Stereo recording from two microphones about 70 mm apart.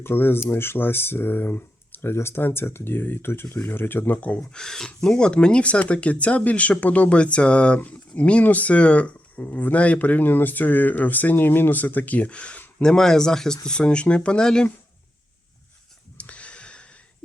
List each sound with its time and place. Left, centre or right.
0.0 s speech: left
4.6 s speech: centre
16.1 s a sound: centre